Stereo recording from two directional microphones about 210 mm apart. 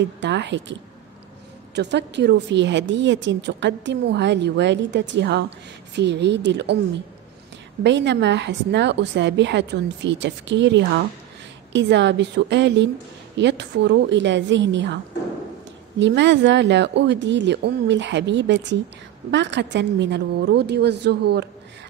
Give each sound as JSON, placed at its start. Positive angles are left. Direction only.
{"t": 0.0, "sound": "a woman's voice", "side_deg": -55}
{"t": 1.8, "sound": "a woman's voice", "side_deg": -55}
{"t": 7.8, "sound": "a woman's voice", "side_deg": -55}
{"t": 16.0, "sound": "a woman's voice", "side_deg": -60}